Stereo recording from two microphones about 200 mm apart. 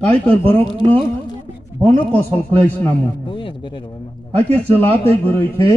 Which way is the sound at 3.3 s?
25° left (ahead or behind).